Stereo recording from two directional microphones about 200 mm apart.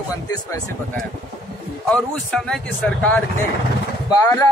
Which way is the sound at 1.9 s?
5° left (ahead or behind).